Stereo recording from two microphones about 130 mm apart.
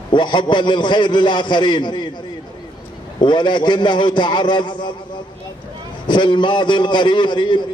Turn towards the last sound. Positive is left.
turn(degrees=35)  # may be behind; listen again after turning